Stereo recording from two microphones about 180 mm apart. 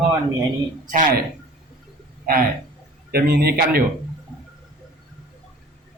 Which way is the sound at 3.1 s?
60° right (ahead or behind).